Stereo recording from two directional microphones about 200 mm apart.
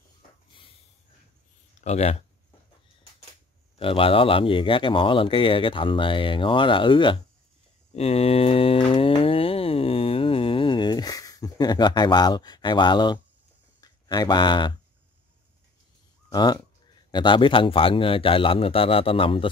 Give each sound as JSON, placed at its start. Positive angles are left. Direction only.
{"t": 1.8, "sound": "speech", "side_deg": 35}
{"t": 3.7, "sound": "speech", "side_deg": 25}
{"t": 7.9, "sound": "a sound", "side_deg": 30}
{"t": 13.7, "sound": "speech", "side_deg": 20}
{"t": 16.3, "sound": "speech", "side_deg": 20}